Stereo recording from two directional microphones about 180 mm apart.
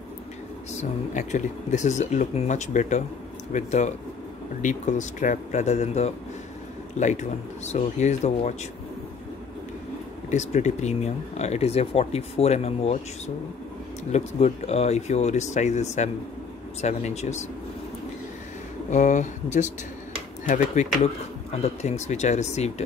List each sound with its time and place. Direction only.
0.7 s speech: 40° left (ahead or behind)
10.3 s speech: 40° left (ahead or behind)
14.1 s speech: 35° left (ahead or behind)
18.9 s speech: 40° left (ahead or behind)